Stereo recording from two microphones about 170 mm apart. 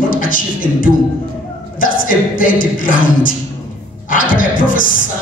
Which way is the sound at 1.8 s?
55° left (ahead or behind).